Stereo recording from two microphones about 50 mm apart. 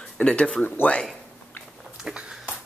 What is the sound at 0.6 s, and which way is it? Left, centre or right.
Speech, left.